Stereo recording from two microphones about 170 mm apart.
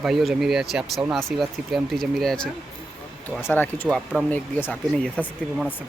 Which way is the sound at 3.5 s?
10° left (ahead or behind).